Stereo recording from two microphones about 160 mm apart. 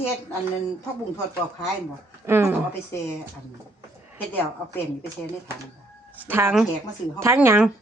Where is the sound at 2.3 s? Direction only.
15° right (ahead or behind).